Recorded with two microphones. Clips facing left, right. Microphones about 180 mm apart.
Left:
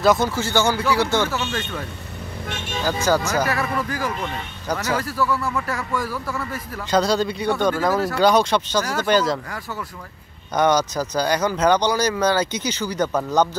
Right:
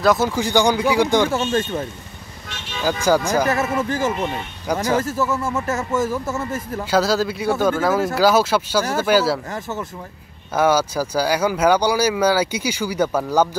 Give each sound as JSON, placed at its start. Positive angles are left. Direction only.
{"t": 0.0, "sound": "speech", "side_deg": 0}
{"t": 0.3, "sound": "speech", "side_deg": -15}
{"t": 1.3, "sound": "speech", "side_deg": -25}
{"t": 2.8, "sound": "speech", "side_deg": -10}
{"t": 3.4, "sound": "speech", "side_deg": -25}
{"t": 6.8, "sound": "speech", "side_deg": -5}
{"t": 9.5, "sound": "speech", "side_deg": -25}
{"t": 10.5, "sound": "speech", "side_deg": -5}